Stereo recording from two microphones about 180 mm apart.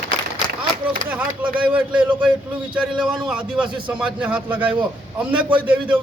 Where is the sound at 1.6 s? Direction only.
5° right (ahead or behind).